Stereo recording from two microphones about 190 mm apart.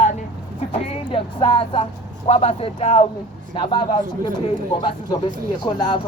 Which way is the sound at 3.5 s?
25° left (ahead or behind).